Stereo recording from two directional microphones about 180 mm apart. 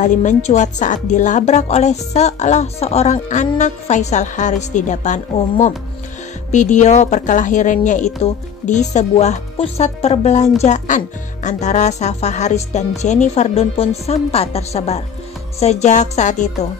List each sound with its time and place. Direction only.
0.0 s a woman's voice: 40° left (ahead or behind)